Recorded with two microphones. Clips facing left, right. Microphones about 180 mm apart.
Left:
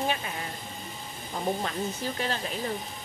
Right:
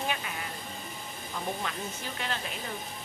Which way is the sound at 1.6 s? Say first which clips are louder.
Left 5 dB; 35° left (ahead or behind).